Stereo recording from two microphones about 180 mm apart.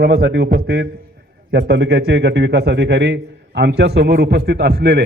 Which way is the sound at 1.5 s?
75° right (ahead or behind).